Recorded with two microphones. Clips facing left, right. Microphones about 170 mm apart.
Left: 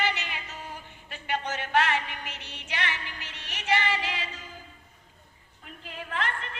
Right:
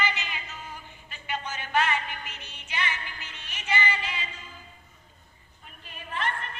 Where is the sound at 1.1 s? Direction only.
70° left (ahead or behind); by 4.3 s 85° left.